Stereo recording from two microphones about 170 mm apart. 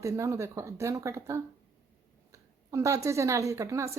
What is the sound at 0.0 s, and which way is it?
A woman's voice, 15° right (ahead or behind).